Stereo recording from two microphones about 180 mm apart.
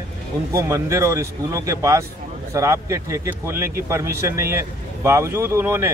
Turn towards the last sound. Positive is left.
turn(degrees=-15)  # may be behind; listen again after turning